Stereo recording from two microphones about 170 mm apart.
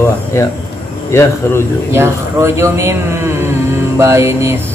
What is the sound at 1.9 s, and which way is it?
Speech, 15° right (ahead or behind).